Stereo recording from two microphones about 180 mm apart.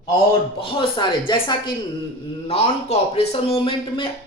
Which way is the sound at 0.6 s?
30° left (ahead or behind).